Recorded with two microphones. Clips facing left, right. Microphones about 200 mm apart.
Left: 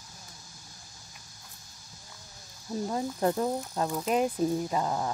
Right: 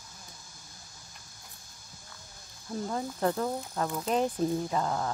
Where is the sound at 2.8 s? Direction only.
15° left (ahead or behind).